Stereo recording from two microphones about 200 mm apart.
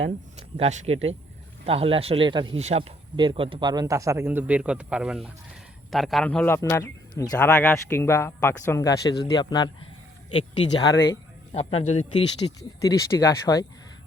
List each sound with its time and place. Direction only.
0.0 s a man's voice: 30° right (ahead or behind); by 9.6 s 20° left (ahead or behind)
10.8 s speech: 15° left (ahead or behind)
11.5 s speech: 35° left (ahead or behind)
12.5 s speech: 15° left (ahead or behind)